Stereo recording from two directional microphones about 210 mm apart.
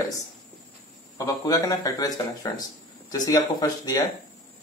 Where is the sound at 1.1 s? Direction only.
15° left (ahead or behind).